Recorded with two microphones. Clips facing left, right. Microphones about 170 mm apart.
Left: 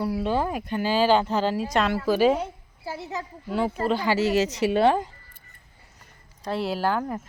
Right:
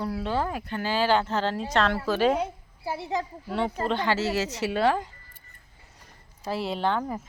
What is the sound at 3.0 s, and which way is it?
Speech, 15° right (ahead or behind).